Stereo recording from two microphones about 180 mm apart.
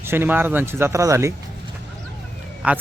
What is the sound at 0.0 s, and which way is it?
Speech, 10° right (ahead or behind).